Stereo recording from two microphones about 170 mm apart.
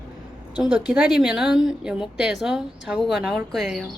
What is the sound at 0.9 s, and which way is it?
A woman's voice, 5° right (ahead or behind).